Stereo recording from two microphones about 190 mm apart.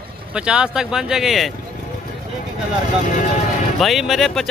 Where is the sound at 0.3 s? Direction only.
5° right (ahead or behind).